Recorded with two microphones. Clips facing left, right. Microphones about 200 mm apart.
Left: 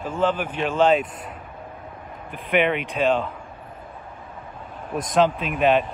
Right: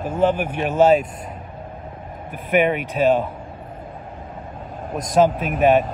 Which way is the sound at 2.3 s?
45° right (ahead or behind).